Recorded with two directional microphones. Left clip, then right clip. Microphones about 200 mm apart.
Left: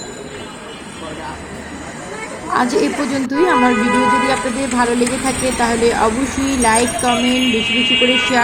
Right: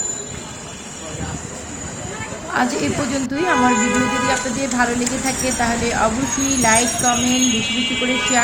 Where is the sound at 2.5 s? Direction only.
20° left (ahead or behind).